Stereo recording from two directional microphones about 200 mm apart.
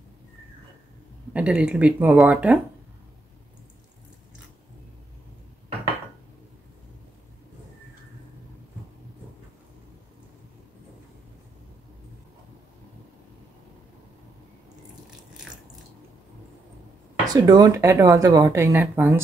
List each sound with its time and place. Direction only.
1.3 s speech: 5° right (ahead or behind)
17.3 s speech: 20° right (ahead or behind)